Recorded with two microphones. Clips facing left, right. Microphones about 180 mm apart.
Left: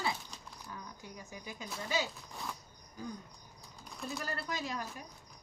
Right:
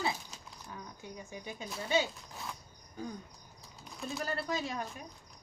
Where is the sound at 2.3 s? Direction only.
Centre (ahead or behind).